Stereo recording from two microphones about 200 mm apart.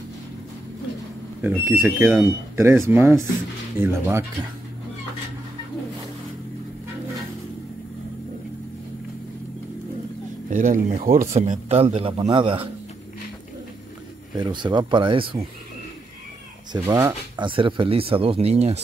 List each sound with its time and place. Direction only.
1.4 s speech: 10° right (ahead or behind)
10.5 s speech: 45° right (ahead or behind); by 12.6 s 25° right (ahead or behind)
14.3 s speech: 20° right (ahead or behind)
16.7 s speech: 15° right (ahead or behind); by 18.8 s 30° right (ahead or behind)